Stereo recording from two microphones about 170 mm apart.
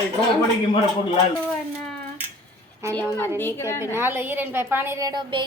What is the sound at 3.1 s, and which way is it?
Speech, 10° left (ahead or behind).